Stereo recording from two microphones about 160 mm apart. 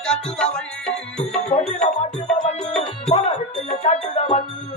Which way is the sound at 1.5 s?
45° left (ahead or behind).